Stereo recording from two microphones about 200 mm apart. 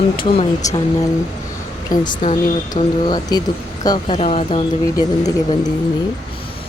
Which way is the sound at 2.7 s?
20° left (ahead or behind).